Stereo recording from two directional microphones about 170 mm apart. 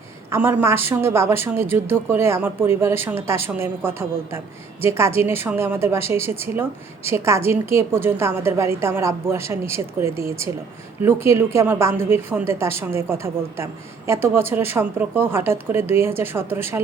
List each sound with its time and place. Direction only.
0.3 s a woman's voice: 15° right (ahead or behind)